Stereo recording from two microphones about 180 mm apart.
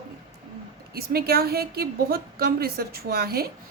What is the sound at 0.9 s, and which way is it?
Speech, 60° right (ahead or behind).